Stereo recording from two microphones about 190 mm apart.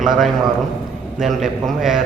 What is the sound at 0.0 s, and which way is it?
A man's voice, centre (ahead or behind).